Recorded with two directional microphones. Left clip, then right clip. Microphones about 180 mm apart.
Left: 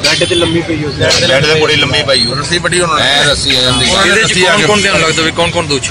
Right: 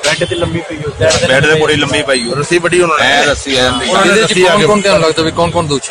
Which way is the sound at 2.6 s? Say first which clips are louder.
Right 1 dB; 50° right (ahead or behind).